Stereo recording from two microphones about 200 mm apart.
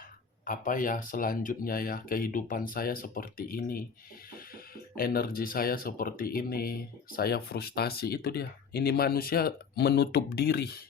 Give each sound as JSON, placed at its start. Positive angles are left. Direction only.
{"t": 0.4, "sound": "speech", "side_deg": 40}